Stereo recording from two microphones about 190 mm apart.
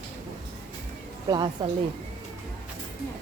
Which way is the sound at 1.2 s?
20° right (ahead or behind).